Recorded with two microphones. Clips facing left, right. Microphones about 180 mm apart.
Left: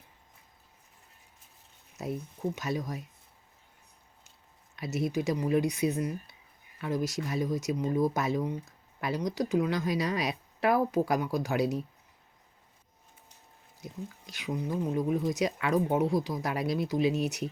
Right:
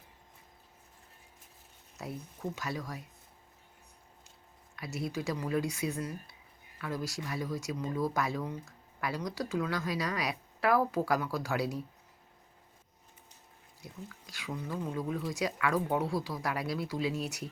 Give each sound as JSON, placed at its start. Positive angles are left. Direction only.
{"t": 2.0, "sound": "speech", "side_deg": 20}
{"t": 4.8, "sound": "speech", "side_deg": 20}
{"t": 13.8, "sound": "speech", "side_deg": 20}